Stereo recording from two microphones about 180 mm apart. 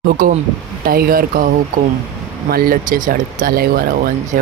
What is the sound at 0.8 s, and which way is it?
Speech, 55° right (ahead or behind).